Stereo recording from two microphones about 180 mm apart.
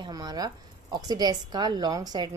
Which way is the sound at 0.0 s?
20° right (ahead or behind).